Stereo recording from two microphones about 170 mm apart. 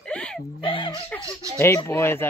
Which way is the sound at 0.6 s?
30° left (ahead or behind).